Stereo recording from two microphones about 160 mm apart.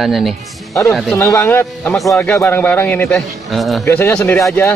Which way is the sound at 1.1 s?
15° left (ahead or behind).